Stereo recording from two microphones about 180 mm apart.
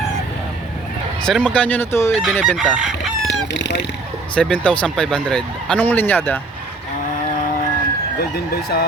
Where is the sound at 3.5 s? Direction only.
75° left (ahead or behind).